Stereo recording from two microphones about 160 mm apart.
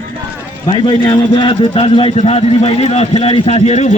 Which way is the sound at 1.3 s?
30° left (ahead or behind).